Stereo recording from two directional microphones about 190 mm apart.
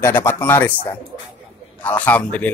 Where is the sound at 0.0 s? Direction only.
10° left (ahead or behind).